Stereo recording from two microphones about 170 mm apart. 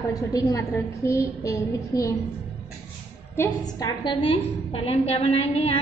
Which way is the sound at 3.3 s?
20° left (ahead or behind).